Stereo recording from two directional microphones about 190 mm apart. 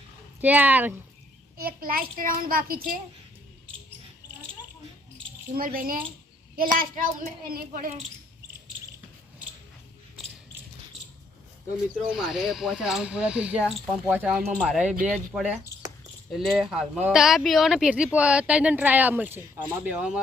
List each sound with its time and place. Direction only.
0.4 s speech: 10° right (ahead or behind)
1.5 s a child's voice: 50° right (ahead or behind)
5.5 s a child's voice: 50° right (ahead or behind)
12.1 s speech: centre (ahead or behind)